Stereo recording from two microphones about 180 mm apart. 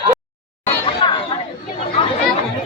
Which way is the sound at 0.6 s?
25° left (ahead or behind).